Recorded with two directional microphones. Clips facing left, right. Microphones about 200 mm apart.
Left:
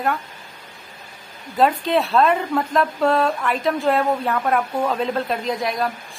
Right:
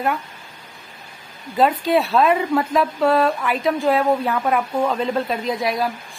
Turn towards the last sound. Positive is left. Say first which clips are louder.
# right 1 dB
turn(degrees=0)  # may be behind; listen again after turning